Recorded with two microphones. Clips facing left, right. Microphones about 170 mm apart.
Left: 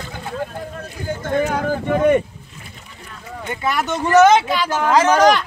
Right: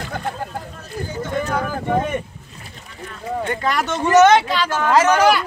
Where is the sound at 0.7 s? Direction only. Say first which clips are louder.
Even; 55° left (ahead or behind).